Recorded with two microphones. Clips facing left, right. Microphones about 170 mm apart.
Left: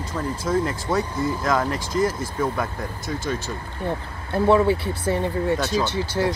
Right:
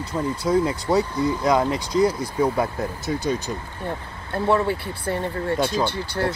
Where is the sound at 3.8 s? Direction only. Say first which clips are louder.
Left 3 dB; 20° left (ahead or behind).